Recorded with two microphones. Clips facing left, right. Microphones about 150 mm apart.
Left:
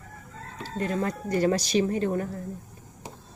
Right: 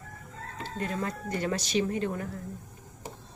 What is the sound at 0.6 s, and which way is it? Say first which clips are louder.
Speech: left 5 dB; 35° left (ahead or behind).